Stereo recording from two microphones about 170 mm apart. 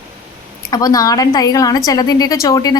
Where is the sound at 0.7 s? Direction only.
20° left (ahead or behind).